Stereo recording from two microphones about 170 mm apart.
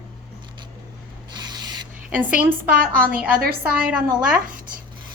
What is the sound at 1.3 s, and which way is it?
Sanding, 25° right (ahead or behind).